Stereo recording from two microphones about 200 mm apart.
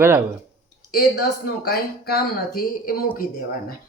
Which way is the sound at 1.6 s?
50° left (ahead or behind).